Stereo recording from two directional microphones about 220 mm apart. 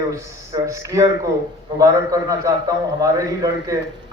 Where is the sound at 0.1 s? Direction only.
15° right (ahead or behind).